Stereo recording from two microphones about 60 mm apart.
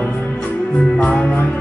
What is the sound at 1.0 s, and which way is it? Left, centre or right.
Music, left.